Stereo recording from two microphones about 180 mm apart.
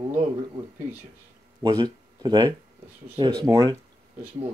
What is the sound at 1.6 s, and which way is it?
Speech, 25° right (ahead or behind).